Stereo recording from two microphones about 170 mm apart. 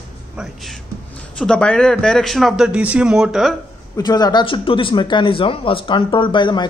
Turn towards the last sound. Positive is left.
turn(degrees=25)  # may be behind; listen again after turning